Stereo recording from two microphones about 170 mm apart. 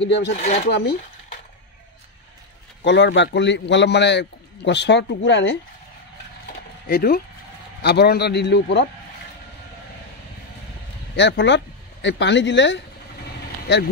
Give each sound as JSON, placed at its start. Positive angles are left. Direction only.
{"t": 0.0, "sound": "a man's voice", "side_deg": 90}
{"t": 0.3, "sound": "speech", "side_deg": 40}
{"t": 0.7, "sound": "a man's voice", "side_deg": 80}
{"t": 2.8, "sound": "a man's voice", "side_deg": 90}
{"t": 6.9, "sound": "speech", "side_deg": 65}
{"t": 7.8, "sound": "a man's voice", "side_deg": 75}
{"t": 11.1, "sound": "speech", "side_deg": 90}